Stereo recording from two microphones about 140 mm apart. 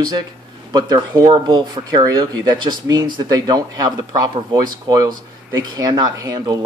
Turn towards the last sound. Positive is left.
turn(degrees=-25)  # may be behind; listen again after turning